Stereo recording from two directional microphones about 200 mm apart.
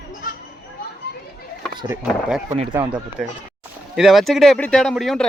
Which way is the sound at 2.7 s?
10° right (ahead or behind).